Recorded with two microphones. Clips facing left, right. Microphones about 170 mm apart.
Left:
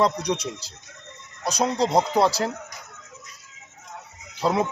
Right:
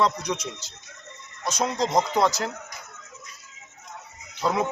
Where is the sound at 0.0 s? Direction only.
35° left (ahead or behind).